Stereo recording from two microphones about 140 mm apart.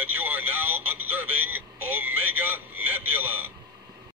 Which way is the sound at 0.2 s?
15° right (ahead or behind).